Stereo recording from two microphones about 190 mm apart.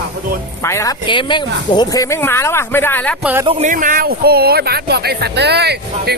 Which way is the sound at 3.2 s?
10° right (ahead or behind).